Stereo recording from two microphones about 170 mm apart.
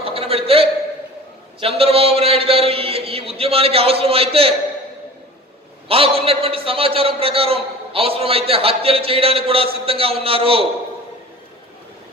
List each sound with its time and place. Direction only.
0.0 s a sound: 35° right (ahead or behind)
1.6 s a man's voice: 35° right (ahead or behind)
5.9 s a man's voice: 35° right (ahead or behind)